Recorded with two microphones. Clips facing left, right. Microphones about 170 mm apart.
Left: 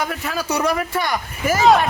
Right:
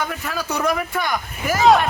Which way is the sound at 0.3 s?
5° left (ahead or behind).